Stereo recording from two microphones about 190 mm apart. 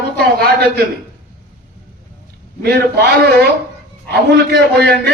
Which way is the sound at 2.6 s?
55° right (ahead or behind).